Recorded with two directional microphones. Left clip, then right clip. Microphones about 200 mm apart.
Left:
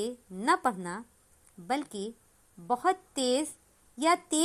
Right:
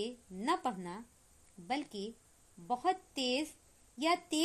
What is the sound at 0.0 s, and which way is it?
A woman's voice, 15° left (ahead or behind).